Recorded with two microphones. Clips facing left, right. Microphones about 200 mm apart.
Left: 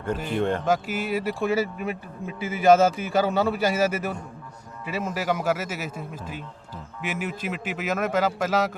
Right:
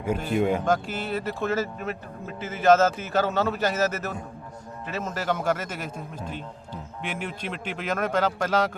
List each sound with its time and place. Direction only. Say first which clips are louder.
0.3 s speech: right 2 dB; 10° right (ahead or behind)
0.6 s a man's voice: left 1 dB; 10° left (ahead or behind)